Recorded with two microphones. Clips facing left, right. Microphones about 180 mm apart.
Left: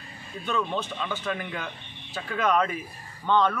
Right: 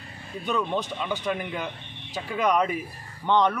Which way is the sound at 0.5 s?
15° right (ahead or behind).